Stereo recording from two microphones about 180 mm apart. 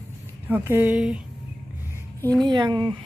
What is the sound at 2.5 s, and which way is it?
Speech, 25° right (ahead or behind).